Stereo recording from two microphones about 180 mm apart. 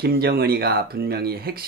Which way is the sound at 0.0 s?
55° right (ahead or behind).